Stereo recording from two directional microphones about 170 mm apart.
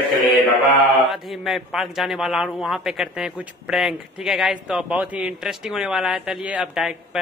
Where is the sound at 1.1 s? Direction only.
Centre (ahead or behind).